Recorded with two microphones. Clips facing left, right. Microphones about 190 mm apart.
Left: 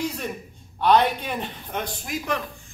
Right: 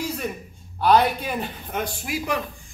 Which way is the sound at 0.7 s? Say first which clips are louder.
Right 1 dB; 5° right (ahead or behind).